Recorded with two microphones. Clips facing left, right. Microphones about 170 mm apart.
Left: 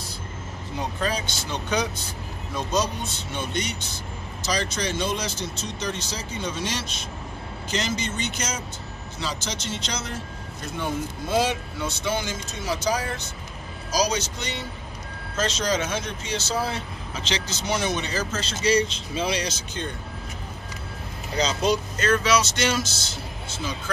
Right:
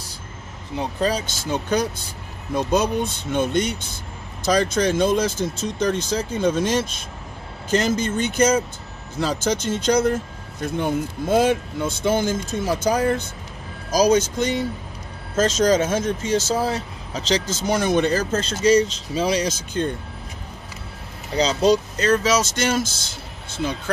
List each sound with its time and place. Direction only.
0.7 s speech: 35° right (ahead or behind)
21.4 s speech: 35° right (ahead or behind); by 22.8 s 50° right (ahead or behind)